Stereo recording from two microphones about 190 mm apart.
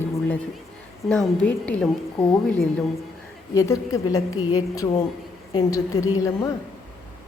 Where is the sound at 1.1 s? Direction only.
5° left (ahead or behind).